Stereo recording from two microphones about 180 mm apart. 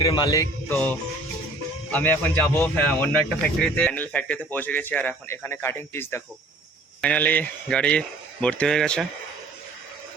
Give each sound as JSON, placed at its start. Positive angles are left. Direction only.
{"t": 0.0, "sound": "music", "side_deg": 30}
{"t": 1.9, "sound": "speech", "side_deg": 10}